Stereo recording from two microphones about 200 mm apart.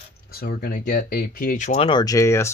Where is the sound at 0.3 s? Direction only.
50° left (ahead or behind).